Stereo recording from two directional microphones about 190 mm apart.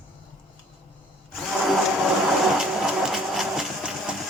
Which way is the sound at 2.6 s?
Centre (ahead or behind).